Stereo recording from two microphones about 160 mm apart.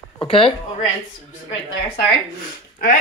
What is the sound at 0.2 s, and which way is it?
Speech, 35° left (ahead or behind).